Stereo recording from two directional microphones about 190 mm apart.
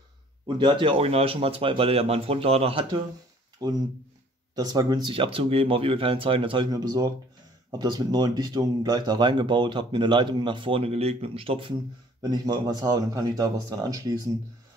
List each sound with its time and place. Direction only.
0.6 s speech: 25° right (ahead or behind)